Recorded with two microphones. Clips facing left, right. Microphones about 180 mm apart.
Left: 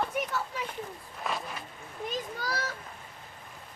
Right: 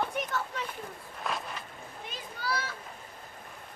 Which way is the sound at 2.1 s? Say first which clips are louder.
Left 1 dB; 40° left (ahead or behind).